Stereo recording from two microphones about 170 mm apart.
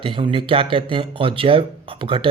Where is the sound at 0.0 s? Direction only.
30° right (ahead or behind).